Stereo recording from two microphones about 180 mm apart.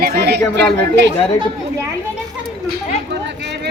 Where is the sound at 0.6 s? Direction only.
75° right (ahead or behind).